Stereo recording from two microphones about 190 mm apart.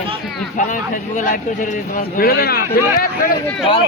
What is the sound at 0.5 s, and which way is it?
A man's voice, 40° left (ahead or behind).